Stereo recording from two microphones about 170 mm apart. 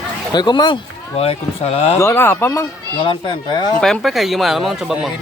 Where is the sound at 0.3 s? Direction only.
25° left (ahead or behind).